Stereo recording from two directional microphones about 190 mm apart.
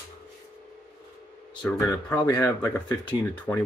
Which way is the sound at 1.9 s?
15° left (ahead or behind).